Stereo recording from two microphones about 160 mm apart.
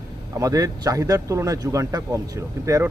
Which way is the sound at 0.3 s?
20° right (ahead or behind).